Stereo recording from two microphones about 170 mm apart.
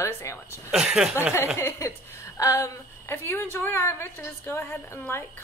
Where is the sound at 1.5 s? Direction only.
15° left (ahead or behind).